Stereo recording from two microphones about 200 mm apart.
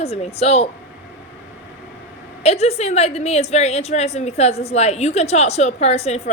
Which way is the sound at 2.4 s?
30° left (ahead or behind).